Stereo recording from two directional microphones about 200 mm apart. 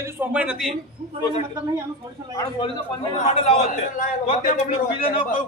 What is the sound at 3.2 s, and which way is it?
Speech, 35° left (ahead or behind).